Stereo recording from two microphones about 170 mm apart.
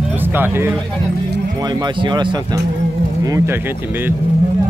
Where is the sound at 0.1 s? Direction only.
10° right (ahead or behind).